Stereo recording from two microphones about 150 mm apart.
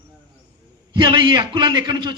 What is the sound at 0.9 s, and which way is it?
A man's voice, 30° right (ahead or behind).